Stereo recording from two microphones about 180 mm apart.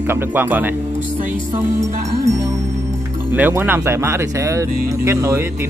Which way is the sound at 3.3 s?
10° right (ahead or behind).